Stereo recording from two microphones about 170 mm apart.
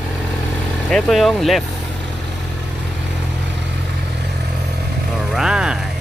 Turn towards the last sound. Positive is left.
turn(degrees=-5)  # may be behind; listen again after turning